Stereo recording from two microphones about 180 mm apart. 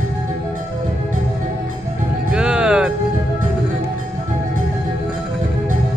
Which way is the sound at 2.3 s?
5° right (ahead or behind).